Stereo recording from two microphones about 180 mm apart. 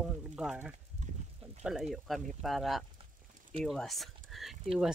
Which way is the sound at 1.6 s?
5° right (ahead or behind).